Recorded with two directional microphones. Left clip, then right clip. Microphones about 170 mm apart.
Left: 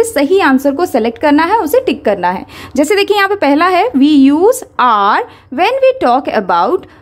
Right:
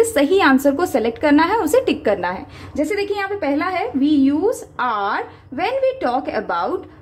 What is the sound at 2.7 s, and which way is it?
A woman's voice, 50° left (ahead or behind).